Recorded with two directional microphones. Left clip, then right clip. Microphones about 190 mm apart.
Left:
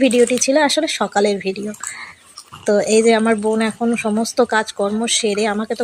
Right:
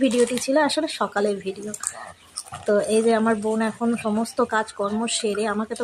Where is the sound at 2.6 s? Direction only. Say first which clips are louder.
Left 6 dB; 15° left (ahead or behind).